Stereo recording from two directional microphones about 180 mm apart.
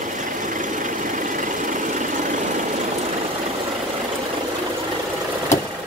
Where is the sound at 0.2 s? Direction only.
45° right (ahead or behind).